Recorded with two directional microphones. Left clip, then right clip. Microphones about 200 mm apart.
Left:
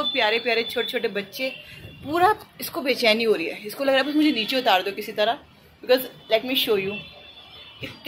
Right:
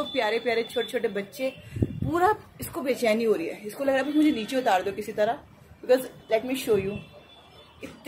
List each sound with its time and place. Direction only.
0.1 s a woman's voice: 5° right (ahead or behind)